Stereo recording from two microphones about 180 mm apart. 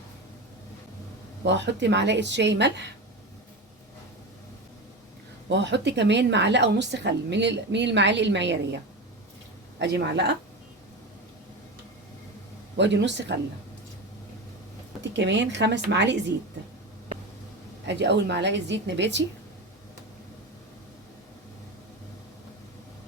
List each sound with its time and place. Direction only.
1.5 s a woman's voice: 80° right
5.5 s a woman's voice: 75° right (ahead or behind)
12.7 s a woman's voice: 75° right (ahead or behind)
15.0 s a woman's voice: 80° right
17.8 s a woman's voice: 75° right (ahead or behind)